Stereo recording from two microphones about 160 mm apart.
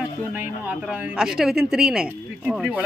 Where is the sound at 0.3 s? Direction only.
10° right (ahead or behind).